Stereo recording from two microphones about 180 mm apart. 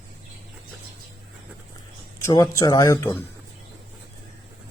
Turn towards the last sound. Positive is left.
turn(degrees=15)  # may be behind; listen again after turning